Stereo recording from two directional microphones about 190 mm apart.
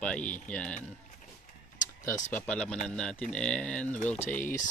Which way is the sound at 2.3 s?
5° left (ahead or behind).